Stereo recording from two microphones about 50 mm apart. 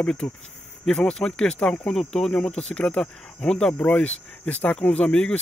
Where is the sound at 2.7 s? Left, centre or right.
Left.